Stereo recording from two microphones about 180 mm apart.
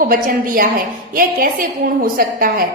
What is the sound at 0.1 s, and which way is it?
Speech, 50° right (ahead or behind).